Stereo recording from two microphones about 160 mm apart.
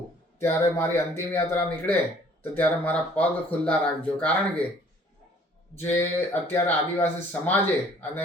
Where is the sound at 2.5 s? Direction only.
10° left (ahead or behind).